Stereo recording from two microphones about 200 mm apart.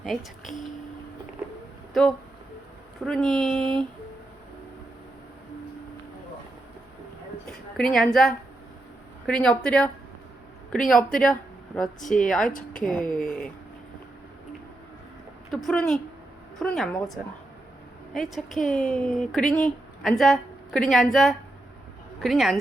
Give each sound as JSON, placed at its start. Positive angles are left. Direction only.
{"t": 0.0, "sound": "speech", "side_deg": 0}
{"t": 1.9, "sound": "speech", "side_deg": 0}
{"t": 7.4, "sound": "a woman's voice", "side_deg": 5}
{"t": 11.9, "sound": "speech", "side_deg": 40}
{"t": 12.3, "sound": "speech", "side_deg": 0}
{"t": 13.1, "sound": "speech", "side_deg": 40}
{"t": 15.5, "sound": "speech", "side_deg": 5}
{"t": 18.1, "sound": "a woman's voice", "side_deg": 0}